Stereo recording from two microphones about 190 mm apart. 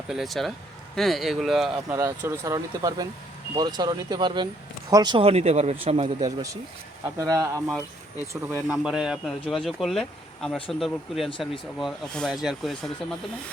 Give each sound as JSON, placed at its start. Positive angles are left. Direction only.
{"t": 0.1, "sound": "speech", "side_deg": 0}
{"t": 1.9, "sound": "speech", "side_deg": -15}
{"t": 6.2, "sound": "speech", "side_deg": -20}
{"t": 8.6, "sound": "speech", "side_deg": -5}
{"t": 11.3, "sound": "speech", "side_deg": 25}
{"t": 11.8, "sound": "speech", "side_deg": 0}